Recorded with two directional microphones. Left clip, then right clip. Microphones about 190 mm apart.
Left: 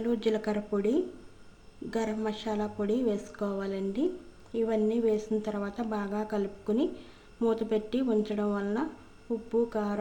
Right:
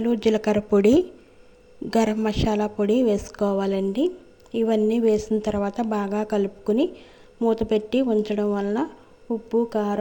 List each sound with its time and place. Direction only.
0.0 s speech: 30° right (ahead or behind)